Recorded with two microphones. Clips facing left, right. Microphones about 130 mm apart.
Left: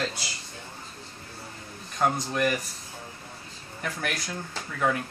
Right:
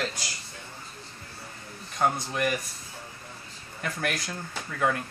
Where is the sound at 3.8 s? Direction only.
Centre (ahead or behind).